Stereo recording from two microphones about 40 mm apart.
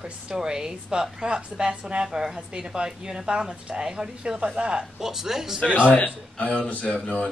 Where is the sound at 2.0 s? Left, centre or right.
Centre.